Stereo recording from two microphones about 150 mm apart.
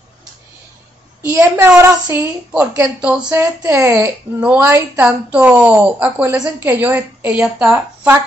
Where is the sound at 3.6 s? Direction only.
20° right (ahead or behind).